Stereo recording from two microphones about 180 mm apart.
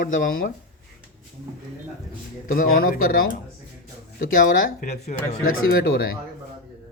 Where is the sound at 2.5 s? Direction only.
50° left (ahead or behind).